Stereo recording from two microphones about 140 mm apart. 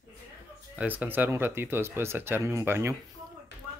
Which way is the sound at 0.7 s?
10° right (ahead or behind).